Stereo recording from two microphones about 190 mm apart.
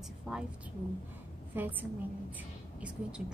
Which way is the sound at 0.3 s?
5° right (ahead or behind).